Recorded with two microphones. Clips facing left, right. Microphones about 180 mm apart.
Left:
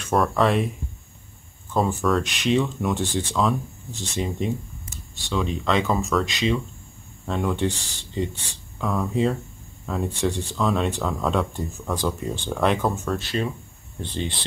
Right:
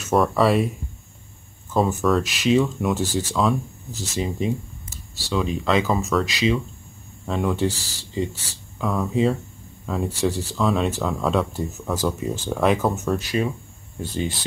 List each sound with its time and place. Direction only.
0.0 s speech: 5° right (ahead or behind)
1.7 s speech: 5° right (ahead or behind)